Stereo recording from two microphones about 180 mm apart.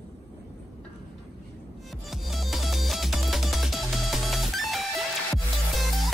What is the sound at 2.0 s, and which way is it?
Music, centre (ahead or behind).